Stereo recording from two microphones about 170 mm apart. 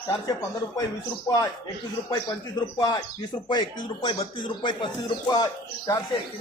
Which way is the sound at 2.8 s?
25° left (ahead or behind).